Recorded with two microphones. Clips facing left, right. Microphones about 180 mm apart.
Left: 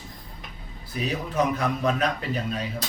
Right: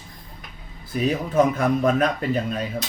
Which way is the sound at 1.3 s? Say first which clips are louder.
Right 5 dB; 50° right (ahead or behind).